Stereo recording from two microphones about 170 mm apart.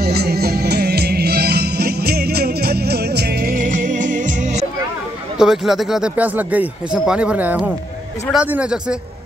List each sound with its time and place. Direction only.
0.0 s music: 70° right (ahead or behind); by 4.6 s 45° right (ahead or behind)
5.4 s speech: centre (ahead or behind)